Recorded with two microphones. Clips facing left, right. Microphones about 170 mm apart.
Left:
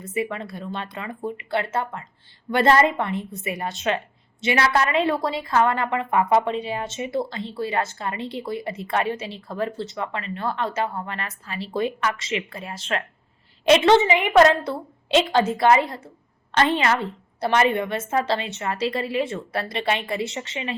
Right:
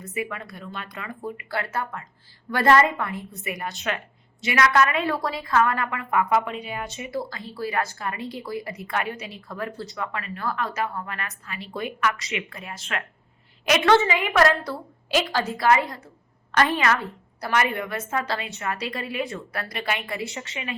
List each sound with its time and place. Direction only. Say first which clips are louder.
0.0 s a woman's voice: left 4 dB; 25° left (ahead or behind)